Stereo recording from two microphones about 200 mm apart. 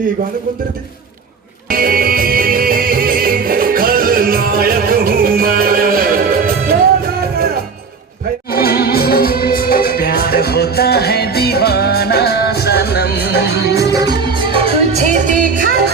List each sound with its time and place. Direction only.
1.7 s music: 45° right (ahead or behind)
8.5 s music: 50° left (ahead or behind)
13.9 s music: 20° right (ahead or behind); by 15.8 s 45° right (ahead or behind)